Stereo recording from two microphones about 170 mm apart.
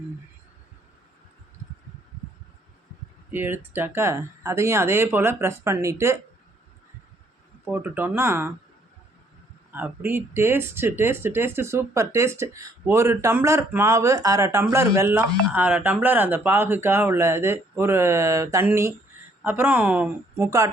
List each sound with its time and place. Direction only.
3.3 s speech: 10° right (ahead or behind)
7.7 s speech: 10° right (ahead or behind)
9.7 s speech: 10° right (ahead or behind)